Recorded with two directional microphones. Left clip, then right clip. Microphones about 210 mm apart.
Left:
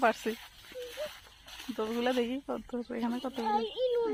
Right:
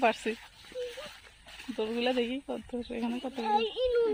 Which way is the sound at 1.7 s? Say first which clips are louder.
Right 1 dB; centre (ahead or behind).